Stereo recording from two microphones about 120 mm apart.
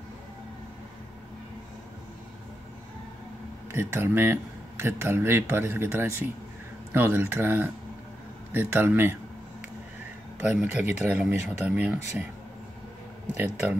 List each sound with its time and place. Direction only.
3.7 s speech: 20° right (ahead or behind)
10.4 s speech: 15° right (ahead or behind)
13.4 s speech: 15° right (ahead or behind)